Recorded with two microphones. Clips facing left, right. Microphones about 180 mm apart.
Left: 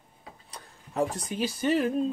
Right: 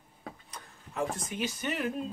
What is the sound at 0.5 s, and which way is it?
Tick-tock, 35° left (ahead or behind).